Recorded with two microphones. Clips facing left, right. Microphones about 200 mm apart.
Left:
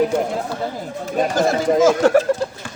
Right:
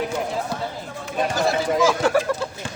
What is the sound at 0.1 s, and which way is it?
Speech, 50° left (ahead or behind).